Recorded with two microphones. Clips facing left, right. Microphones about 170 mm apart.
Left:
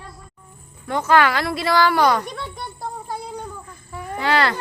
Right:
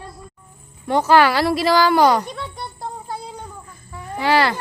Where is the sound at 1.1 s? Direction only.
25° right (ahead or behind).